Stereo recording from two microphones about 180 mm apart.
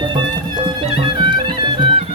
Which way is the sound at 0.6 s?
25° right (ahead or behind).